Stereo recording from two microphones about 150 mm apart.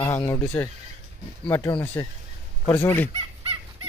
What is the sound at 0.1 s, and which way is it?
Speech, 20° left (ahead or behind).